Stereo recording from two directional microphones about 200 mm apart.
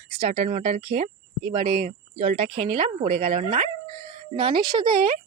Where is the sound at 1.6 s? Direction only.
45° right (ahead or behind).